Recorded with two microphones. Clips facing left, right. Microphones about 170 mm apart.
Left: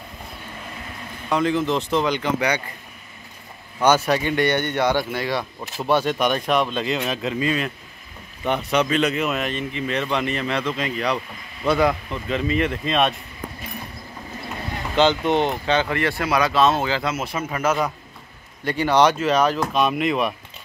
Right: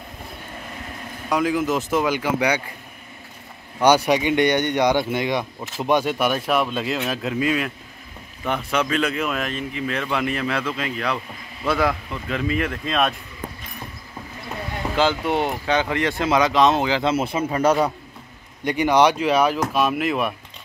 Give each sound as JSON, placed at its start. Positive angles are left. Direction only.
{"t": 1.3, "sound": "speech", "side_deg": -5}
{"t": 3.8, "sound": "speech", "side_deg": -15}
{"t": 8.7, "sound": "speech", "side_deg": 0}
{"t": 15.0, "sound": "speech", "side_deg": -10}
{"t": 17.1, "sound": "a man's voice", "side_deg": -30}
{"t": 18.6, "sound": "speech", "side_deg": -15}